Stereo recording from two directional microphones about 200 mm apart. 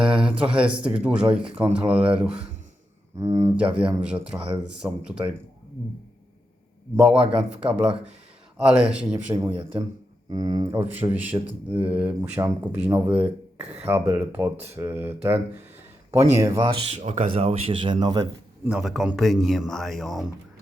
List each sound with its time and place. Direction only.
0.0 s speech: 5° right (ahead or behind)
3.2 s speech: 15° right (ahead or behind)
3.6 s speech: 5° right (ahead or behind)
7.1 s speech: 30° right (ahead or behind)
7.6 s speech: 5° right (ahead or behind)
10.2 s speech: 20° right (ahead or behind)
16.4 s speech: 15° right (ahead or behind)
16.8 s speech: 35° right (ahead or behind); by 18.3 s 20° right (ahead or behind)
18.7 s speech: 5° right (ahead or behind)